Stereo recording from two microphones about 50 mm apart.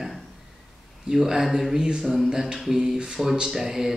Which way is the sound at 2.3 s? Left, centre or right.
Centre.